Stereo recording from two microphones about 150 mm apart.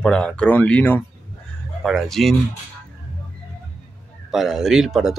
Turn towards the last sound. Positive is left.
turn(degrees=0)  # may be behind; listen again after turning